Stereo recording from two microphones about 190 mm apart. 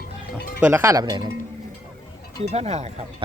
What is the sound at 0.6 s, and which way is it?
Speech, 10° right (ahead or behind).